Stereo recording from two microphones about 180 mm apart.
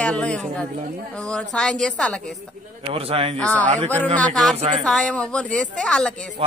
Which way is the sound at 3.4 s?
5° left (ahead or behind).